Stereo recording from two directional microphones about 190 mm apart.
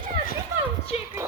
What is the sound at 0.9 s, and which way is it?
Speech, 35° left (ahead or behind).